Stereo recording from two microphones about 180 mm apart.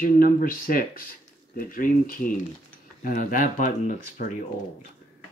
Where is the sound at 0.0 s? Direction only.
50° left (ahead or behind).